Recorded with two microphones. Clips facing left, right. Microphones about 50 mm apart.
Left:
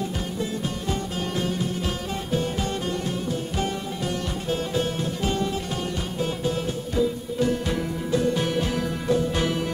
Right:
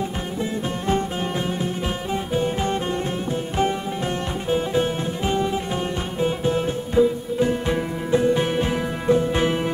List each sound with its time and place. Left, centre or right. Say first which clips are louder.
0.4 s music: right 4 dB; right
2.3 s music: right 3 dB; right
4.5 s music: right 5 dB; right